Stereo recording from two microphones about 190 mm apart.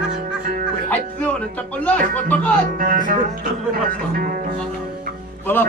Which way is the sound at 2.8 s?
45° right (ahead or behind).